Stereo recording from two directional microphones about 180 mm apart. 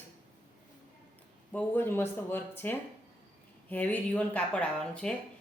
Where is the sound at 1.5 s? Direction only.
10° left (ahead or behind).